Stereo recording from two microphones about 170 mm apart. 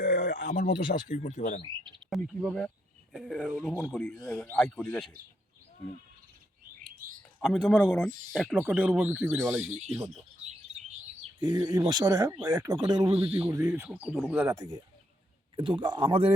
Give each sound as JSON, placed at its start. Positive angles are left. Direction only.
{"t": 0.0, "sound": "a sound", "side_deg": 80}
{"t": 1.0, "sound": "speech", "side_deg": 45}
{"t": 2.0, "sound": "speech", "side_deg": 0}
{"t": 7.2, "sound": "speech", "side_deg": 0}
{"t": 11.3, "sound": "speech", "side_deg": -25}